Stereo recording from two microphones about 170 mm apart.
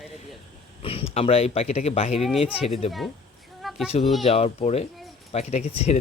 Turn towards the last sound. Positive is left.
turn(degrees=40)  # may be behind; listen again after turning